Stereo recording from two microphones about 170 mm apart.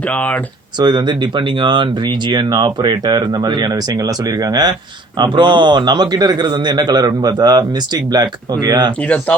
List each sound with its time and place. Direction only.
0.8 s a man's voice: 25° right (ahead or behind)
5.2 s a man's voice: 25° right (ahead or behind)